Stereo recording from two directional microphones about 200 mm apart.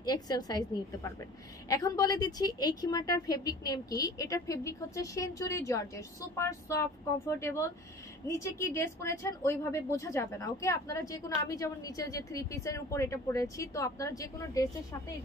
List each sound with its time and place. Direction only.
0.0 s a woman's voice: 20° left (ahead or behind)